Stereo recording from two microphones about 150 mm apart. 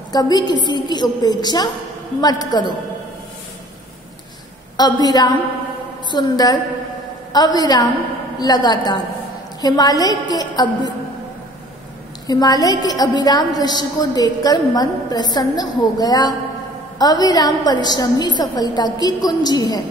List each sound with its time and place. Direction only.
0.1 s a woman's voice: 25° left (ahead or behind)
4.7 s a woman's voice: 25° left (ahead or behind)
12.3 s a woman's voice: 25° left (ahead or behind)